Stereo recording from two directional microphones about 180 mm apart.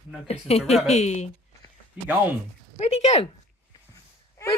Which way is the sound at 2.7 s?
35° left (ahead or behind).